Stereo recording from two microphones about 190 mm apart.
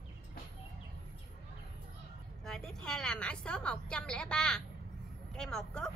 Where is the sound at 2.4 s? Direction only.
Centre (ahead or behind).